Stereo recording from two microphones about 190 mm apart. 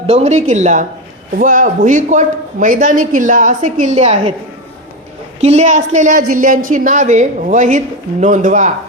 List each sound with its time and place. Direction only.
0.1 s speech: 35° right (ahead or behind)
5.4 s speech: 35° right (ahead or behind)